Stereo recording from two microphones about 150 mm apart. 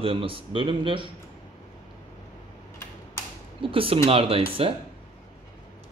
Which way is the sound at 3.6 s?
35° right (ahead or behind).